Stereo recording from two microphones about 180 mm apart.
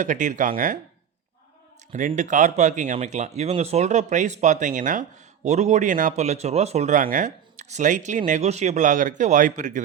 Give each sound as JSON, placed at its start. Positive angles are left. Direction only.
{"t": 0.0, "sound": "speech", "side_deg": -45}
{"t": 1.9, "sound": "speech", "side_deg": -45}